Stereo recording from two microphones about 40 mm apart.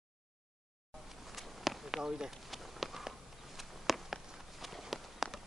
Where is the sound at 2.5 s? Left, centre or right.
Centre.